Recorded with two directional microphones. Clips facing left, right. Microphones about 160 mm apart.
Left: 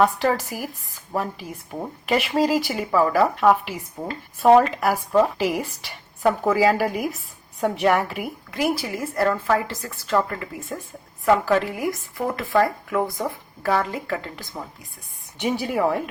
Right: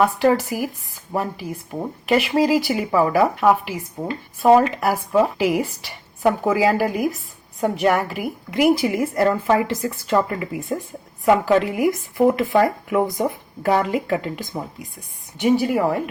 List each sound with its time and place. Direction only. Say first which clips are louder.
0.0 s speech: right 3 dB; 5° right (ahead or behind)
8.4 s speech: right 8 dB; 15° right (ahead or behind)
15.4 s speech: right 5 dB; 5° right (ahead or behind)